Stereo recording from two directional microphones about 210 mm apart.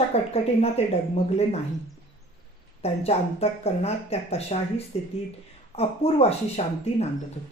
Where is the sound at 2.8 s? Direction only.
30° left (ahead or behind).